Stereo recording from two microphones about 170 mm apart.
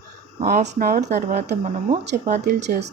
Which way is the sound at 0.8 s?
60° right (ahead or behind).